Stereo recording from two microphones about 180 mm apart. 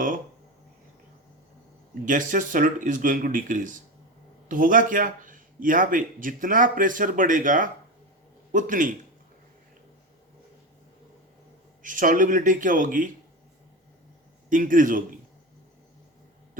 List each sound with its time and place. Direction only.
2.0 s a man's voice: 45° right (ahead or behind)
11.8 s a man's voice: 45° right (ahead or behind)
14.5 s a man's voice: 50° right (ahead or behind)